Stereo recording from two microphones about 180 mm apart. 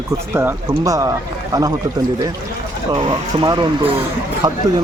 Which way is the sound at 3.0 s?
30° right (ahead or behind).